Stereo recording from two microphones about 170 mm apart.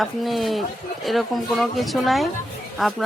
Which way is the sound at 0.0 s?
Centre (ahead or behind).